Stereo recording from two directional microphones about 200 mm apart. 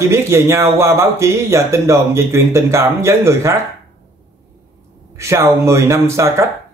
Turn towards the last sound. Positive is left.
turn(degrees=-15)  # may be behind; listen again after turning